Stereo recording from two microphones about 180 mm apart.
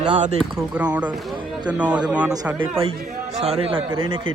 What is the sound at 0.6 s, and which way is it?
A man's voice, 10° right (ahead or behind).